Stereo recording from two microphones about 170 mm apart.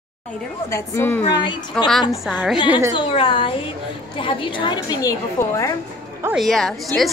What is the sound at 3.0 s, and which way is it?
A woman's voice, 30° left (ahead or behind).